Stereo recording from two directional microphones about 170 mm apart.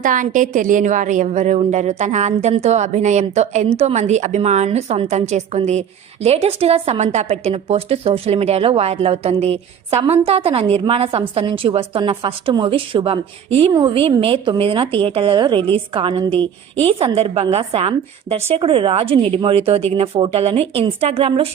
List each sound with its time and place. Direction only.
0.0 s a woman's voice: 50° right (ahead or behind)